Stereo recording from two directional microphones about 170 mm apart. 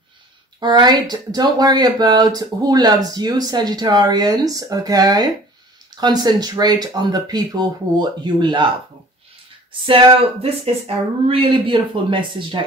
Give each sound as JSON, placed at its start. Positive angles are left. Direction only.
{"t": 0.6, "sound": "speech", "side_deg": -25}
{"t": 9.7, "sound": "speech", "side_deg": -30}